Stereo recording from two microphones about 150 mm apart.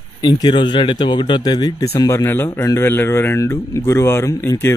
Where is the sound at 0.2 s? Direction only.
30° left (ahead or behind).